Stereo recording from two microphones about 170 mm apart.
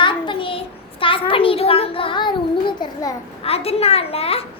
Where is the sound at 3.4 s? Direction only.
35° left (ahead or behind).